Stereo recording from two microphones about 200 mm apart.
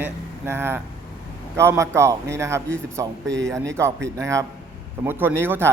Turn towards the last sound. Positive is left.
turn(degrees=-10)  # may be behind; listen again after turning